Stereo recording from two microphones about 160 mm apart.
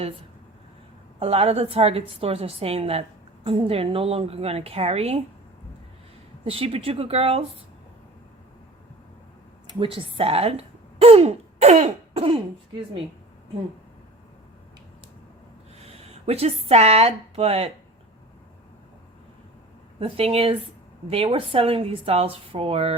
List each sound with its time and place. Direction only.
1.2 s a woman's voice: 40° right (ahead or behind)
6.4 s a woman's voice: 35° right (ahead or behind)
9.8 s speech: 35° right (ahead or behind)
15.8 s speech: 40° right (ahead or behind)
20.0 s a woman's voice: 35° right (ahead or behind)